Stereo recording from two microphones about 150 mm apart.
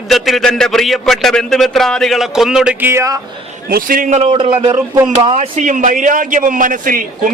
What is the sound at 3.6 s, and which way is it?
Speech, 70° right (ahead or behind).